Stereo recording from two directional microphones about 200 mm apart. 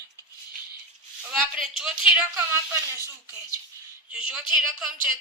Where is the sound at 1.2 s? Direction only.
Centre (ahead or behind).